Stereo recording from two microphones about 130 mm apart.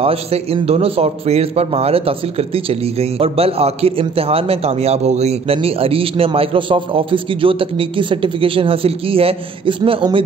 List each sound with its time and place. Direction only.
0.0 s a man's voice: 50° right (ahead or behind)